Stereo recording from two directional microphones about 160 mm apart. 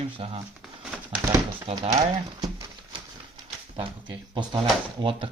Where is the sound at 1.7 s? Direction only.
35° right (ahead or behind).